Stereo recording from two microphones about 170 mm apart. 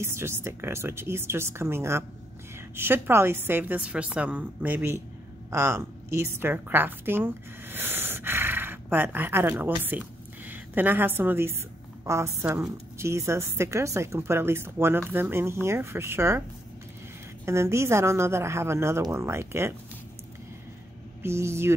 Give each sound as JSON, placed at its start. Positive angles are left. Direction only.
{"t": 0.0, "sound": "a woman's voice", "side_deg": -15}
{"t": 17.5, "sound": "a woman's voice", "side_deg": -15}
{"t": 21.2, "sound": "a woman's voice", "side_deg": -15}